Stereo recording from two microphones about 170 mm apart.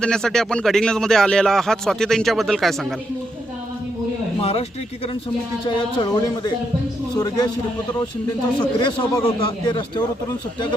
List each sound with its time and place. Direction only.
0.0 s speech: 5° left (ahead or behind)
4.4 s a sound: 35° left (ahead or behind)
5.6 s a man's voice: 30° left (ahead or behind)
8.5 s a man's voice: 25° left (ahead or behind)